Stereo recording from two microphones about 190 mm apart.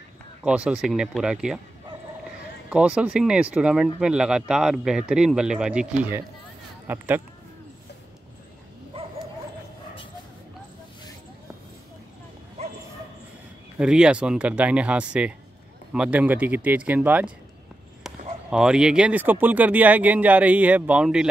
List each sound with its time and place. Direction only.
0.4 s speech: 5° right (ahead or behind)
2.7 s speech: 5° right (ahead or behind)
9.0 s dog: 30° right (ahead or behind)
13.7 s speech: 5° right (ahead or behind)
18.5 s speech: 5° right (ahead or behind)